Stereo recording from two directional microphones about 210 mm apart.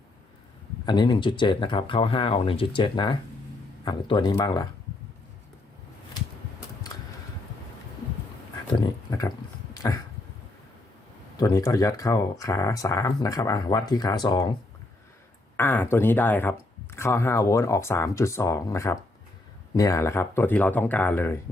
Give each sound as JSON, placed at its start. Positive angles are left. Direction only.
{"t": 0.9, "sound": "speech", "side_deg": 20}
{"t": 8.8, "sound": "a sound", "side_deg": 20}
{"t": 9.7, "sound": "dog", "side_deg": 20}
{"t": 11.3, "sound": "speech", "side_deg": 15}
{"t": 15.5, "sound": "speech", "side_deg": 10}